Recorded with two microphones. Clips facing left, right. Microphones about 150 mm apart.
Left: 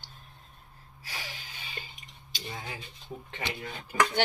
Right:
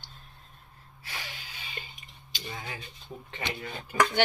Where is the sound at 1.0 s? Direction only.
35° left (ahead or behind).